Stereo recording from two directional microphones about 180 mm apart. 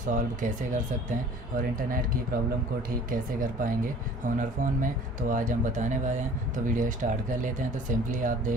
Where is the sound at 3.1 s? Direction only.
50° right (ahead or behind).